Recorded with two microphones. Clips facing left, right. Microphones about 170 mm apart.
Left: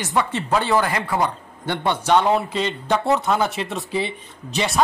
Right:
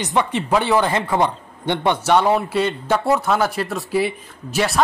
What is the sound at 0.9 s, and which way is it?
A man's voice, 25° right (ahead or behind).